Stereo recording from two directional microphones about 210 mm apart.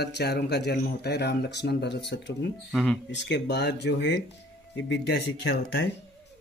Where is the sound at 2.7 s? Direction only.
5° left (ahead or behind).